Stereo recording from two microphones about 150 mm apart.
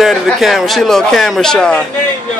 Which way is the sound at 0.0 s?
Centre (ahead or behind).